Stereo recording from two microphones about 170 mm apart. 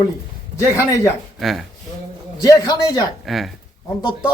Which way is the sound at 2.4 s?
20° left (ahead or behind).